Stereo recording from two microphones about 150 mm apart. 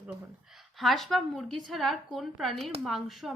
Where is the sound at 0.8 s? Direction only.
Centre (ahead or behind).